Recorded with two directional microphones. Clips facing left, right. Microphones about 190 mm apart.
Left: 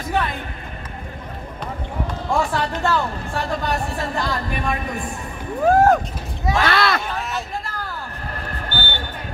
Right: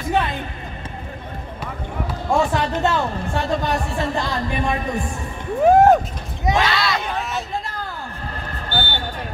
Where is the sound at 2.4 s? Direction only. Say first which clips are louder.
Right 3 dB; 20° right (ahead or behind).